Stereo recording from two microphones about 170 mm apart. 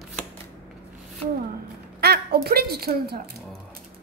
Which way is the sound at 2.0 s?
65° right (ahead or behind).